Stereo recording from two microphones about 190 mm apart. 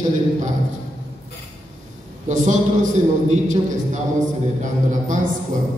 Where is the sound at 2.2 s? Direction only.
40° right (ahead or behind).